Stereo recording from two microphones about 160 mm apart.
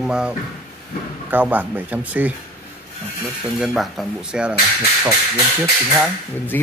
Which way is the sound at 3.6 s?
Centre (ahead or behind).